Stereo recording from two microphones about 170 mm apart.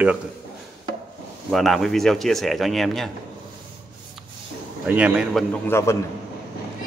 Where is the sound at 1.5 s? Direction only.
Centre (ahead or behind).